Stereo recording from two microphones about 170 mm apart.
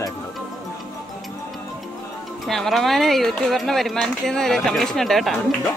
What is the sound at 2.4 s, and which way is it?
Speech, centre (ahead or behind).